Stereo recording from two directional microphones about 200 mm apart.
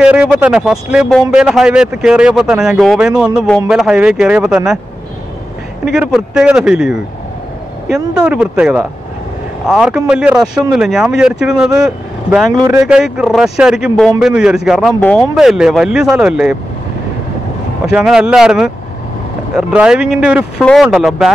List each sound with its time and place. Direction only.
0.0 s speech: 5° right (ahead or behind)
5.9 s speech: 5° right (ahead or behind)
12.4 s speech: 15° right (ahead or behind)
12.8 s speech: 5° right (ahead or behind)
17.9 s speech: 5° right (ahead or behind)